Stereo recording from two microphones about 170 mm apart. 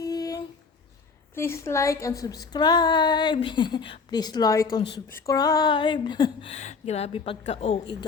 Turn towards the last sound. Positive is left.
turn(degrees=35)  # may be behind; listen again after turning